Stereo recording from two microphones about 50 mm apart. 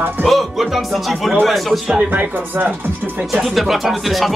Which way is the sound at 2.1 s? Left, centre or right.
Right.